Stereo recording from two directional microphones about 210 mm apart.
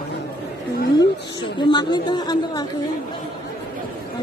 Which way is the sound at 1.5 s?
20° left (ahead or behind).